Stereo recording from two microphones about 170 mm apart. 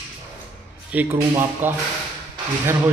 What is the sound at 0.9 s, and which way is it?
Speech, 10° right (ahead or behind).